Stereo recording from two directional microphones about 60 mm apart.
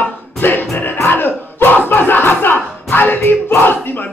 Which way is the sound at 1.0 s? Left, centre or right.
Left.